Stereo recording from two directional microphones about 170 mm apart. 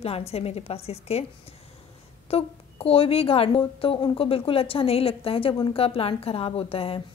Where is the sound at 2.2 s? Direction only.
35° left (ahead or behind).